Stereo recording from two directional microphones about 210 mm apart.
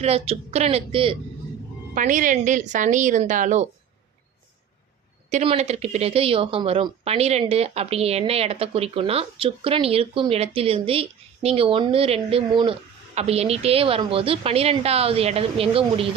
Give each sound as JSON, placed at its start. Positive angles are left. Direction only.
{"t": 0.0, "sound": "speech", "side_deg": -30}
{"t": 2.0, "sound": "a woman's voice", "side_deg": -40}
{"t": 5.3, "sound": "speech", "side_deg": -30}